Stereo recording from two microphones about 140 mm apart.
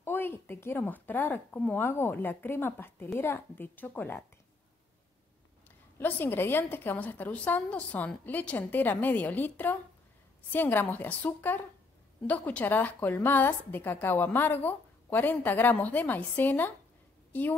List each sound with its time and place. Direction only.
0.0 s a woman's voice: 15° left (ahead or behind)
5.9 s a woman's voice: 15° left (ahead or behind)